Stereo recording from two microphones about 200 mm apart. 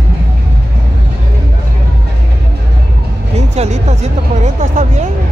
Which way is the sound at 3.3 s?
35° right (ahead or behind).